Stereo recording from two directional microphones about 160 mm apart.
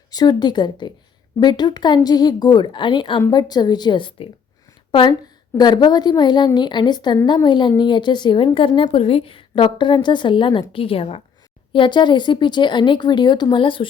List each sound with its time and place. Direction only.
0.1 s a woman's voice: 25° left (ahead or behind)